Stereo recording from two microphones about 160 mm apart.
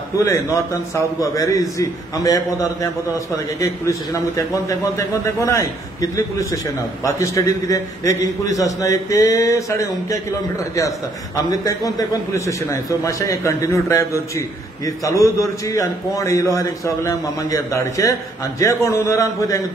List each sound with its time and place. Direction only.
0.2 s a man's voice: 20° left (ahead or behind)
11.3 s a man's voice: 20° left (ahead or behind)